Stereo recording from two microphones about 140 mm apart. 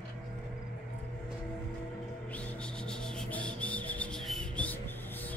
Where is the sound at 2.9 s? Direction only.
5° left (ahead or behind).